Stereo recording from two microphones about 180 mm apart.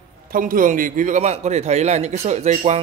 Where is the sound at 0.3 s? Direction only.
50° right (ahead or behind).